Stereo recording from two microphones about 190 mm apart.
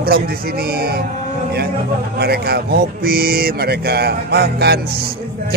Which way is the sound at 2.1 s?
55° right (ahead or behind).